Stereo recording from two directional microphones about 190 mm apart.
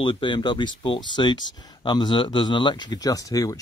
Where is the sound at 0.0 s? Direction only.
25° left (ahead or behind).